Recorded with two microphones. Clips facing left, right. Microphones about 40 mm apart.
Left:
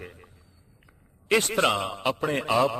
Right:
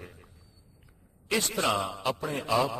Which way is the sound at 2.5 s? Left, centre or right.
Left.